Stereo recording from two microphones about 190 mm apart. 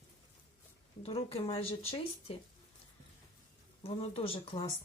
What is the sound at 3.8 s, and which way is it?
Speech, 30° left (ahead or behind).